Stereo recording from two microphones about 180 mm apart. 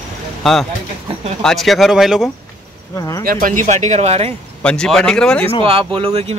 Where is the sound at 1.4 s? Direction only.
Centre (ahead or behind).